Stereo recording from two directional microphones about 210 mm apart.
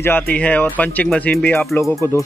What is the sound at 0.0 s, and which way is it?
Speech, 10° left (ahead or behind).